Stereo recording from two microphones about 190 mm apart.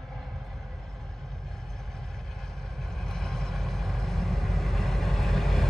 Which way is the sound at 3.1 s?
5° left (ahead or behind).